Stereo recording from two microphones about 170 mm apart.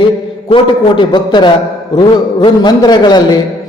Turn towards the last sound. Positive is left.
turn(degrees=25)  # may be behind; listen again after turning